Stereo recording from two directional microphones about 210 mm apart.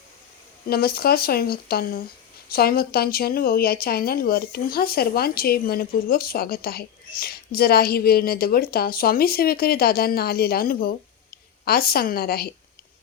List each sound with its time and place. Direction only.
0.7 s a woman's voice: 45° left (ahead or behind)